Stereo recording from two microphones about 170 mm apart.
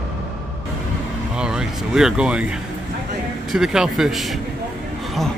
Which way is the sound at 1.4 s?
5° right (ahead or behind).